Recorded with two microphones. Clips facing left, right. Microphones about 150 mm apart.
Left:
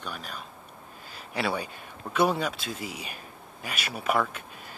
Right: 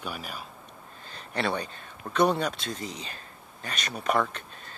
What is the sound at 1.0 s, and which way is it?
Speech, 5° left (ahead or behind).